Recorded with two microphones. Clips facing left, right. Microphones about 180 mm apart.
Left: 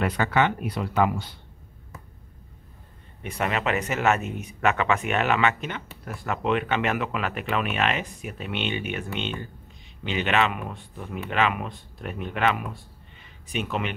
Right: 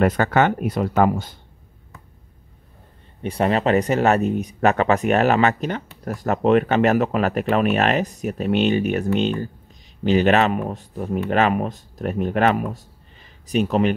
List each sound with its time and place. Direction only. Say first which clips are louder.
0.0 s speech: right 6 dB; 45° right (ahead or behind)
3.2 s speech: right 7 dB; 30° right (ahead or behind)